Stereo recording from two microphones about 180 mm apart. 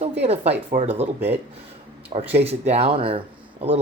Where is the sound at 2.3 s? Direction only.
35° right (ahead or behind).